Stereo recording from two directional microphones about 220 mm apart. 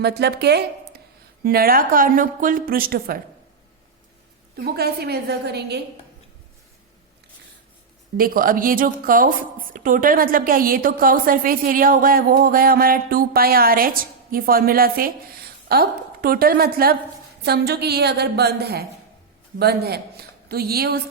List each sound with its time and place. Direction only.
0.0 s a woman's voice: 50° right (ahead or behind)
4.5 s a woman's voice: 45° right (ahead or behind)
8.2 s a woman's voice: 40° right (ahead or behind)